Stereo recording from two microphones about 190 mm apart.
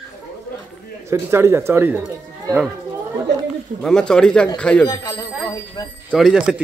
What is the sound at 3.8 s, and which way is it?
Speech, 5° left (ahead or behind).